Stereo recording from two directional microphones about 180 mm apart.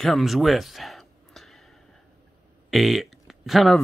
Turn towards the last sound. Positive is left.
turn(degrees=0)  # may be behind; listen again after turning